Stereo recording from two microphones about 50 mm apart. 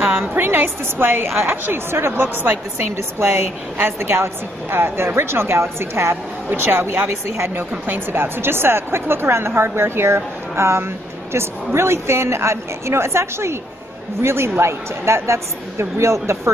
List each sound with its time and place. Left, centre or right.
0.0 s a sound: right
0.3 s a woman's voice: right
2.8 s a woman's voice: right
7.8 s a woman's voice: right